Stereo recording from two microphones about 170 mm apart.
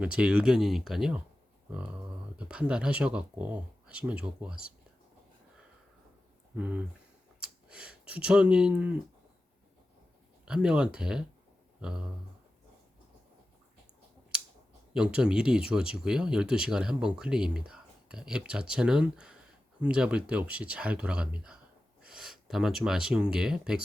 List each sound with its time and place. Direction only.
0.0 s speech: 5° right (ahead or behind)
6.6 s speech: 10° right (ahead or behind)
10.4 s speech: 5° right (ahead or behind)
14.9 s speech: 5° right (ahead or behind)